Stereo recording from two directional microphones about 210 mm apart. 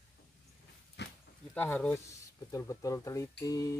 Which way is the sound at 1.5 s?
5° left (ahead or behind).